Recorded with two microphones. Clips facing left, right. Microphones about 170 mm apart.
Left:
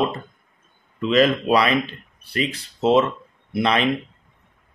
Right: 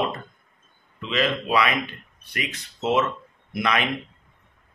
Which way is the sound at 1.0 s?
40° left (ahead or behind).